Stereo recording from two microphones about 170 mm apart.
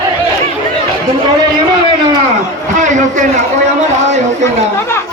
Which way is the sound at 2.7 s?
45° right (ahead or behind).